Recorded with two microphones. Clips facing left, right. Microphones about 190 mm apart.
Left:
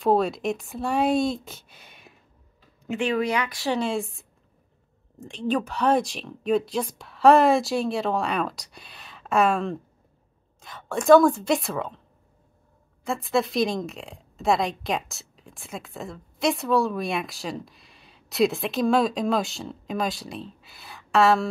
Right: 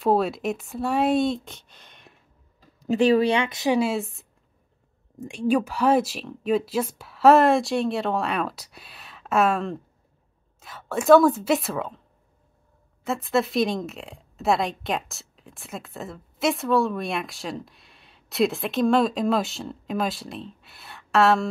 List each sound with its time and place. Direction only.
0.0 s a woman's voice: centre (ahead or behind)
2.8 s a woman's voice: 35° right (ahead or behind); by 4.2 s 5° right (ahead or behind)
5.2 s a woman's voice: 10° right (ahead or behind)
13.0 s a woman's voice: centre (ahead or behind)